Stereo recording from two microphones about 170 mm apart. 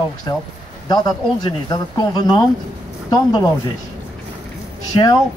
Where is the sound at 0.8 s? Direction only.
25° left (ahead or behind).